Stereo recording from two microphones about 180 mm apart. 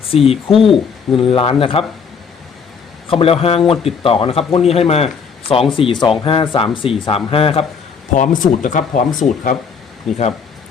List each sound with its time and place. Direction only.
0.3 s speech: 30° left (ahead or behind)
3.1 s speech: 30° left (ahead or behind)
8.1 s speech: 45° left (ahead or behind)
10.1 s speech: centre (ahead or behind)